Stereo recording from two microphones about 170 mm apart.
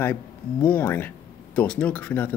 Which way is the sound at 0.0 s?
10° left (ahead or behind).